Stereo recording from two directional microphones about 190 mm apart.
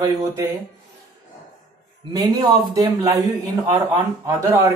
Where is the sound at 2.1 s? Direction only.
20° right (ahead or behind).